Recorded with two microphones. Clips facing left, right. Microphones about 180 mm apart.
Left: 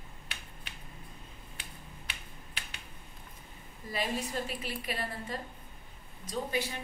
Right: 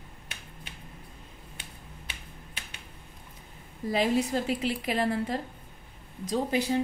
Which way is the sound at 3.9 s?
90° right.